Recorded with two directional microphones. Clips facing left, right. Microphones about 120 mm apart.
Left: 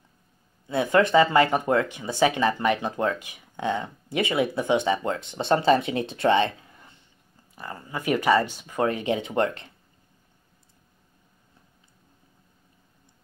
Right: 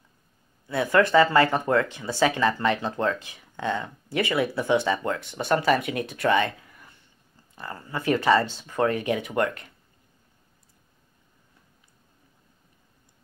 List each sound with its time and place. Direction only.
0.7 s speech: 20° left (ahead or behind)